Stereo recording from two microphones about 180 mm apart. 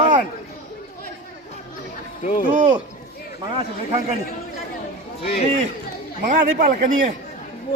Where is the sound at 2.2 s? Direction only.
50° left (ahead or behind).